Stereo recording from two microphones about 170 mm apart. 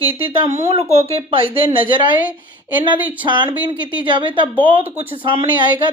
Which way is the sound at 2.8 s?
30° right (ahead or behind).